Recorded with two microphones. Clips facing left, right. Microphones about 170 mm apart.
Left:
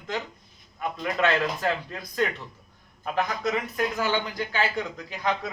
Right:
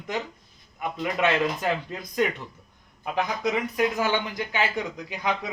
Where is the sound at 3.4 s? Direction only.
15° right (ahead or behind).